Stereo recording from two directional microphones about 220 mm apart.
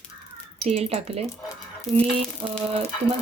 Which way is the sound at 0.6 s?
25° right (ahead or behind).